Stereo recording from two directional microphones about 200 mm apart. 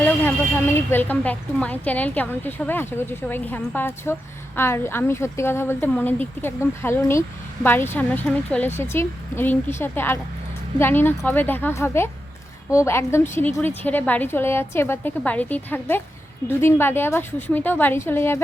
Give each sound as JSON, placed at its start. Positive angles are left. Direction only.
{"t": 0.0, "sound": "a woman's voice", "side_deg": 10}